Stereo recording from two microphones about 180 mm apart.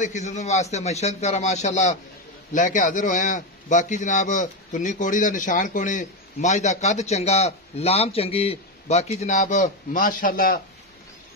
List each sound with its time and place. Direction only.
0.0 s a man's voice: 40° left (ahead or behind)